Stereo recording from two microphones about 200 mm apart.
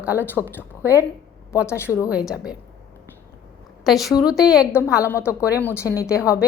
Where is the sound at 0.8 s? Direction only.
10° right (ahead or behind).